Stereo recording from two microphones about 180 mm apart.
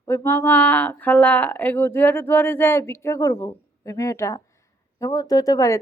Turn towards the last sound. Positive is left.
turn(degrees=20)  # may be behind; listen again after turning